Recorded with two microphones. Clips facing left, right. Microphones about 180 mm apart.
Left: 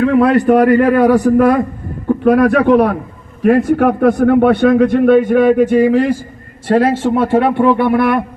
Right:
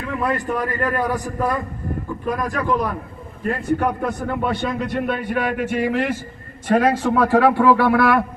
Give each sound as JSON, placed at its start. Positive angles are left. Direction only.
{"t": 0.0, "sound": "a man's voice", "side_deg": 75}
{"t": 3.4, "sound": "a man's voice", "side_deg": 85}
{"t": 6.7, "sound": "a man's voice", "side_deg": 30}